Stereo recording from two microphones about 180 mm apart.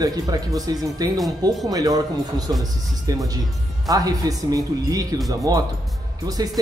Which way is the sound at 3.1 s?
20° right (ahead or behind).